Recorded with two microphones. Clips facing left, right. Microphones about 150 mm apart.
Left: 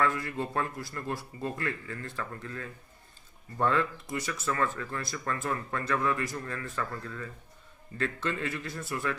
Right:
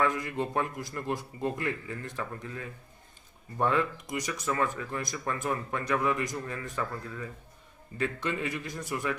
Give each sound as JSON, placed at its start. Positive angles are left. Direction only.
{"t": 0.0, "sound": "speech", "side_deg": -15}